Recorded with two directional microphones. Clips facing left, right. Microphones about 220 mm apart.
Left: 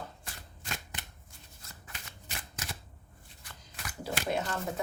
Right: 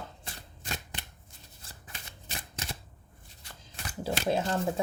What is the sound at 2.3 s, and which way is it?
Shuffling cards, 25° right (ahead or behind).